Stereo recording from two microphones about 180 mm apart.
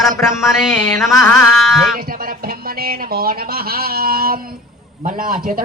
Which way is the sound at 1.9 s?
55° right (ahead or behind).